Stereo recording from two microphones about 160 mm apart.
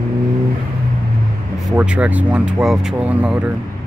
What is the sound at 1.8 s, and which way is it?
Speech, 10° right (ahead or behind).